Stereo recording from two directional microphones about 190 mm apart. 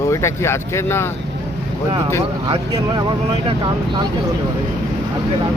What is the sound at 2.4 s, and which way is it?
Speech, 25° right (ahead or behind).